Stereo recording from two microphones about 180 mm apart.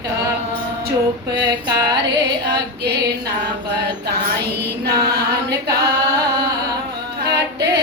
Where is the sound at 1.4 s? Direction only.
20° right (ahead or behind).